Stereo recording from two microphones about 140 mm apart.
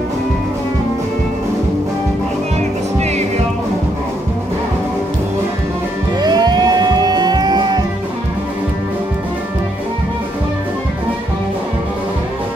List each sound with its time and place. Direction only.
6.2 s music: 30° right (ahead or behind)